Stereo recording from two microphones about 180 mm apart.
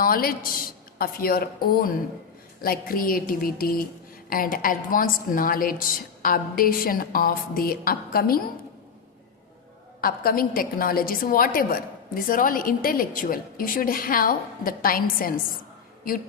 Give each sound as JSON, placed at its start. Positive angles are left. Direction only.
{"t": 0.0, "sound": "a woman's voice", "side_deg": 55}
{"t": 10.0, "sound": "a woman's voice", "side_deg": 55}